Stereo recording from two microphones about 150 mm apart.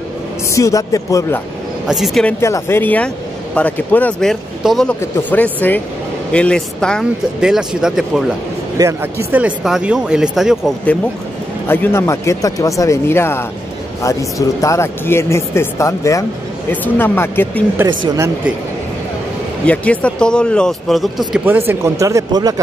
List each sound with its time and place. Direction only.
0.5 s speech: 20° left (ahead or behind)
1.9 s speech: centre (ahead or behind)
2.2 s speech: 15° left (ahead or behind); by 8.0 s 5° right (ahead or behind)
8.7 s speech: 20° right (ahead or behind)
9.3 s speech: 5° right (ahead or behind)
11.6 s speech: 15° left (ahead or behind)
14.6 s speech: 20° left (ahead or behind)
17.8 s speech: 25° right (ahead or behind)
19.6 s speech: 10° left (ahead or behind)
21.3 s speech: 15° right (ahead or behind)